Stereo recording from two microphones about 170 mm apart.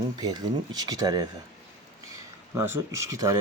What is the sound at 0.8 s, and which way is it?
Speech, 25° right (ahead or behind).